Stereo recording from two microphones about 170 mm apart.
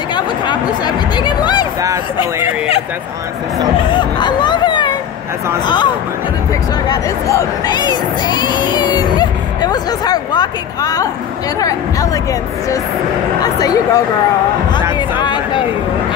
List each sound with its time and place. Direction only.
0.1 s speech: 25° left (ahead or behind)
3.9 s speech: 25° left (ahead or behind)
6.9 s speech: 20° left (ahead or behind)
15.0 s a sound: 25° left (ahead or behind)